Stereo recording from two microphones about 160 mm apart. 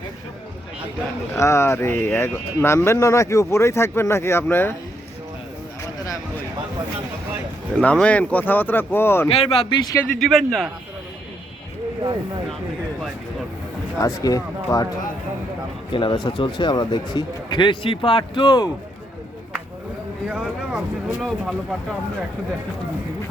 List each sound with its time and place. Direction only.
1.4 s speech: 15° left (ahead or behind)
7.8 s speech: 10° left (ahead or behind)
9.3 s speech: 35° left (ahead or behind)
9.8 s speech: 20° left (ahead or behind)
10.2 s speech: centre (ahead or behind)
14.2 s speech: 20° left (ahead or behind)
15.9 s speech: 30° left (ahead or behind)
20.2 s speech: 5° right (ahead or behind)